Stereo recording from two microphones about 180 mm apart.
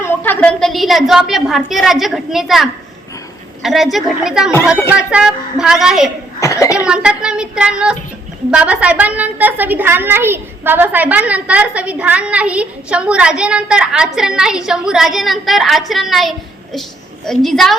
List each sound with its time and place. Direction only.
0.0 s a woman's voice: 10° left (ahead or behind)
6.4 s speech: 15° left (ahead or behind)
6.8 s a woman's voice: 5° right (ahead or behind)